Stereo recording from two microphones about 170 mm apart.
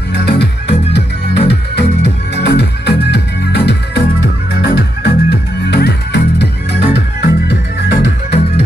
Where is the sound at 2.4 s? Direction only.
80° left.